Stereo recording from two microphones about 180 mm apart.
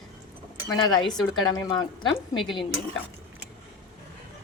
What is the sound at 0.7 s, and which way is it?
Speech, 25° left (ahead or behind).